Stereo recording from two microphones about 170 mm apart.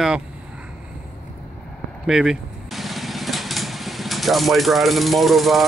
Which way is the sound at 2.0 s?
Centre (ahead or behind).